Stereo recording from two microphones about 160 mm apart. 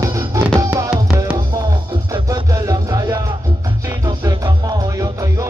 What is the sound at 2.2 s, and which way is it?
Music, 20° right (ahead or behind).